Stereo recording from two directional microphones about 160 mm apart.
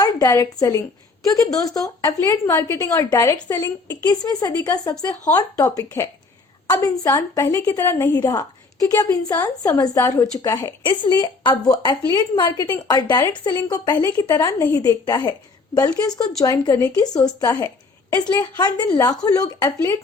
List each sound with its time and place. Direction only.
0.0 s a woman's voice: 20° left (ahead or behind)
10.8 s a woman's voice: 30° left (ahead or behind)
18.5 s a woman's voice: 25° left (ahead or behind)